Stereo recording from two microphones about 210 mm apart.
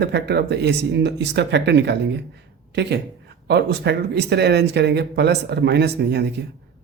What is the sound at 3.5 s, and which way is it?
Speech, 50° right (ahead or behind).